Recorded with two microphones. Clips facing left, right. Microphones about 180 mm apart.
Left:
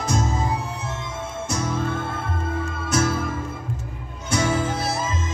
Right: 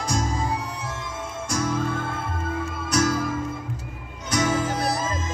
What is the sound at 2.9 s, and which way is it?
Music, 25° left (ahead or behind).